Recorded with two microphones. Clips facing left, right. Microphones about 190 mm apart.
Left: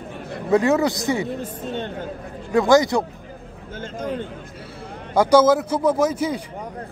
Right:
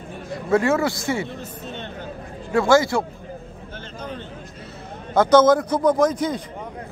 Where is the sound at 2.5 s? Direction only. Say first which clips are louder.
Left 1 dB; 20° left (ahead or behind).